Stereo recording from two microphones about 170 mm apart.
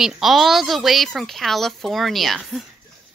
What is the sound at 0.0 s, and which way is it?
Speech, centre (ahead or behind).